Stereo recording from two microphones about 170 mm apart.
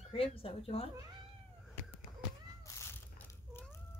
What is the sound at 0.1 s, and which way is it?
Speech, 35° left (ahead or behind).